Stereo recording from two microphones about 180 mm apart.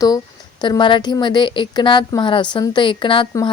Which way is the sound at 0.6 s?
25° left (ahead or behind).